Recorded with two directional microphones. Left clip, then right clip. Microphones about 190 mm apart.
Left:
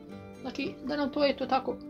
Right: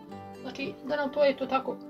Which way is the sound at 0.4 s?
55° left (ahead or behind).